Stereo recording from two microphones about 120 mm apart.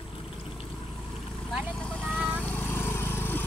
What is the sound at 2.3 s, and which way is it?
Lawn mower, 10° left (ahead or behind).